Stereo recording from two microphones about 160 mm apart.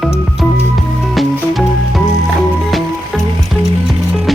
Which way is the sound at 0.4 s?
Centre (ahead or behind).